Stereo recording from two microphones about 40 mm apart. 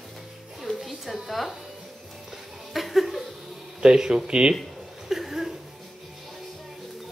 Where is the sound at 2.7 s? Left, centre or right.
Centre.